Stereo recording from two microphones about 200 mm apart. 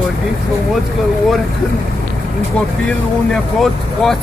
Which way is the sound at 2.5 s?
5° left (ahead or behind).